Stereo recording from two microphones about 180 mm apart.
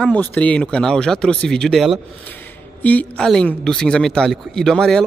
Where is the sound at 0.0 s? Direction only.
10° left (ahead or behind).